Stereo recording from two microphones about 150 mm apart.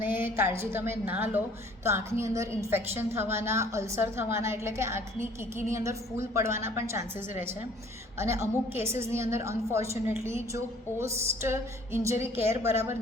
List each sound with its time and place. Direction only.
0.0 s music: 15° right (ahead or behind)
0.4 s a woman's voice: 15° right (ahead or behind)